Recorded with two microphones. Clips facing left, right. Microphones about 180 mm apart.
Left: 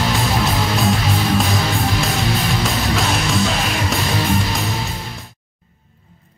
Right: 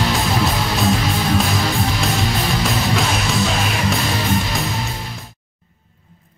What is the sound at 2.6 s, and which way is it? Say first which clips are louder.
Music: even; centre (ahead or behind).